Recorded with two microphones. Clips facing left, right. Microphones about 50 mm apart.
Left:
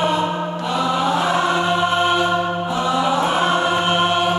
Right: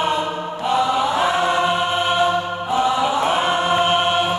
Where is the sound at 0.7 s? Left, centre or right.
Centre.